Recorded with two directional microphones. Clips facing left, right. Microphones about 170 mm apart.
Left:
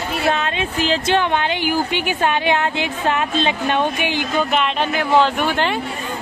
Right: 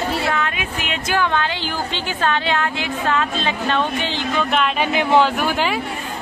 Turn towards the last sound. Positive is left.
turn(degrees=-5)  # may be behind; listen again after turning